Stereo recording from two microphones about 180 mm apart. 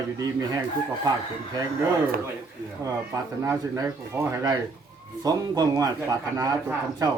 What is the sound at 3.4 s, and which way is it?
Speech, 15° right (ahead or behind).